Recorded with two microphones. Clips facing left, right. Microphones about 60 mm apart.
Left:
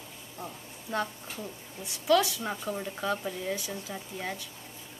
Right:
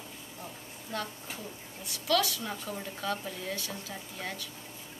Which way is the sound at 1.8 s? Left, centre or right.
Left.